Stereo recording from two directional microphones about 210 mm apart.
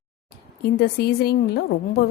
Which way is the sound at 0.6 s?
50° left (ahead or behind).